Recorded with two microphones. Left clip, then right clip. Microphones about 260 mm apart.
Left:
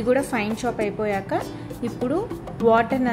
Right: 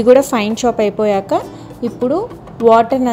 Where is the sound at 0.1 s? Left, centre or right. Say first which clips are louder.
Right 12 dB; right.